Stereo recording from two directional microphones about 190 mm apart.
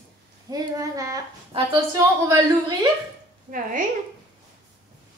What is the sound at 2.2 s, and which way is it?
Speech, 20° right (ahead or behind).